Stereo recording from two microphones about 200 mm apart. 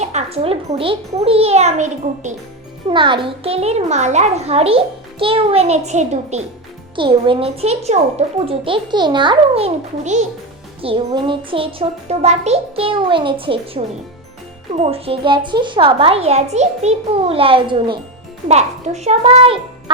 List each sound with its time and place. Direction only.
0.0 s a child's voice: 35° right (ahead or behind)